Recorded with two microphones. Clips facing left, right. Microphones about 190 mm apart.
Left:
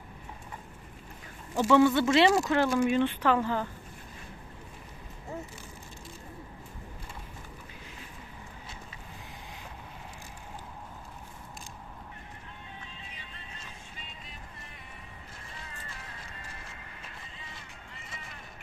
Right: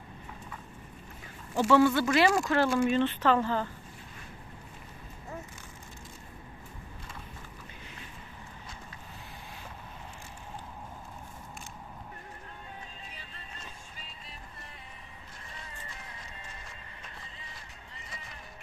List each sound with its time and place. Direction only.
1.6 s speech: 15° left (ahead or behind)